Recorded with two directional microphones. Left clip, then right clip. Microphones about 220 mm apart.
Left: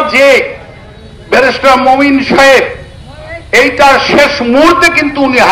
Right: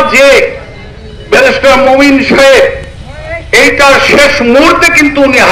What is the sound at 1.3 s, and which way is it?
A man's voice, 50° left (ahead or behind).